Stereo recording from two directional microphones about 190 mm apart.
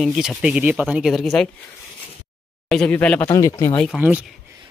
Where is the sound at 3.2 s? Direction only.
20° left (ahead or behind).